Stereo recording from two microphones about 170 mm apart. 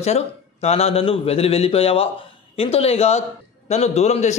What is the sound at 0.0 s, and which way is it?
A man's voice, 40° left (ahead or behind).